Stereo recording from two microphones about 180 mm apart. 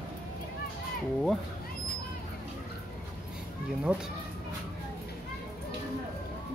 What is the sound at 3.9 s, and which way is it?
Speech, 10° right (ahead or behind).